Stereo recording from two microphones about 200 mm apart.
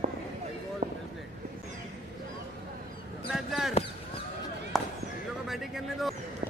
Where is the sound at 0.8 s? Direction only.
50° right (ahead or behind).